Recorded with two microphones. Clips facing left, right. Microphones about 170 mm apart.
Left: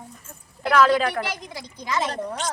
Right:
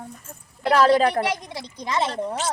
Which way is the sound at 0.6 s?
30° right (ahead or behind).